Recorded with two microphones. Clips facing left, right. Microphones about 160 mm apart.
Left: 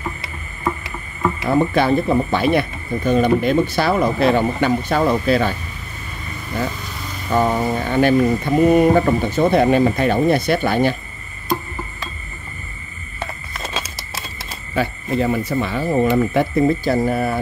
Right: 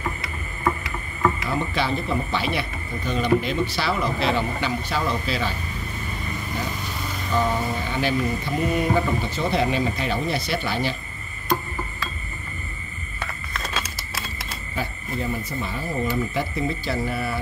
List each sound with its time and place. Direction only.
1.5 s speech: 50° left (ahead or behind)
7.3 s speech: 50° left (ahead or behind)
13.2 s a sound: 25° left (ahead or behind)
14.8 s speech: 80° left; by 17.4 s 50° left (ahead or behind)